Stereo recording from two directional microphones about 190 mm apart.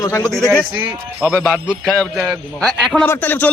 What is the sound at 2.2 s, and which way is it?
A man's voice, 5° right (ahead or behind).